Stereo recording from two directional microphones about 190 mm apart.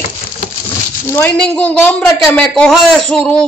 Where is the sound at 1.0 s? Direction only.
10° left (ahead or behind).